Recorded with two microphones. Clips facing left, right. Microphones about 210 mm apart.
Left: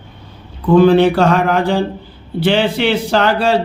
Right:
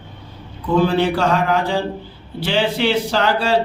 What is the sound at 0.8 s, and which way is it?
Speech, 60° left (ahead or behind).